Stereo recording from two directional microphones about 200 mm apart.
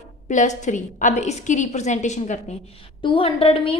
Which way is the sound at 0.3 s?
35° left (ahead or behind).